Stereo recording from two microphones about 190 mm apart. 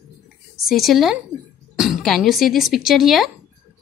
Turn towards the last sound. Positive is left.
turn(degrees=0)  # may be behind; listen again after turning